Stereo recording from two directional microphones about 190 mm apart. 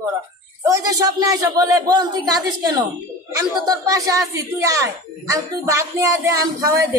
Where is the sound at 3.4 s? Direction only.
20° right (ahead or behind).